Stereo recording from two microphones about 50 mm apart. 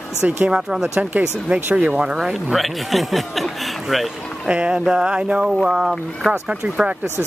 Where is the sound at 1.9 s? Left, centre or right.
Centre.